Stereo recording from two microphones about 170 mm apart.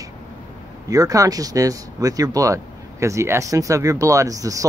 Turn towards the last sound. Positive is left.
turn(degrees=-20)  # may be behind; listen again after turning